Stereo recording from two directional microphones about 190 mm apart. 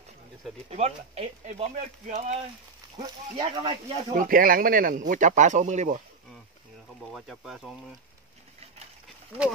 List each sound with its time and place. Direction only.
0.7 s speech: 35° right (ahead or behind)
3.0 s speech: 25° right (ahead or behind)
4.1 s speech: 45° right (ahead or behind)
7.0 s speech: centre (ahead or behind)